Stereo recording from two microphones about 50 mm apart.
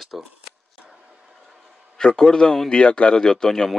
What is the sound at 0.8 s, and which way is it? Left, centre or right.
Vehicle, centre.